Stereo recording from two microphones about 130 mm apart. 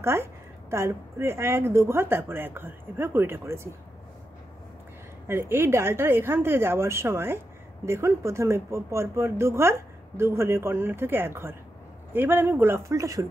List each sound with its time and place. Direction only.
0.0 s a woman's voice: 20° right (ahead or behind)
5.3 s a woman's voice: 20° right (ahead or behind)